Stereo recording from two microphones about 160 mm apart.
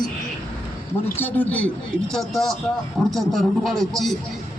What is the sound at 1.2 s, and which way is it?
A man's voice, 10° left (ahead or behind).